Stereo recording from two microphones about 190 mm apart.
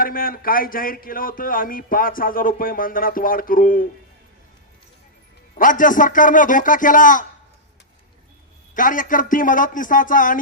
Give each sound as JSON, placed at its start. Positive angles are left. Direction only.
{"t": 0.0, "sound": "speech", "side_deg": 50}
{"t": 5.5, "sound": "speech", "side_deg": 45}
{"t": 8.7, "sound": "speech", "side_deg": 45}